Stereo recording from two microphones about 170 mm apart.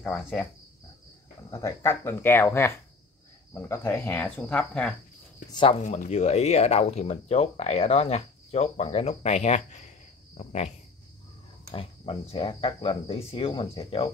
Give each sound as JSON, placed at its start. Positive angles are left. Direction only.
{"t": 0.0, "sound": "cricket", "side_deg": 5}
{"t": 1.6, "sound": "speech", "side_deg": 15}
{"t": 5.5, "sound": "speech", "side_deg": 30}
{"t": 5.9, "sound": "speech", "side_deg": 45}
{"t": 11.7, "sound": "speech", "side_deg": 35}